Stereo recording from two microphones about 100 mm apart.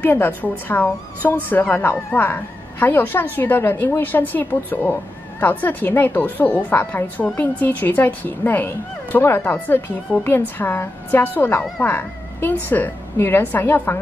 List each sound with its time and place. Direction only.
0.0 s a woman's voice: 20° left (ahead or behind)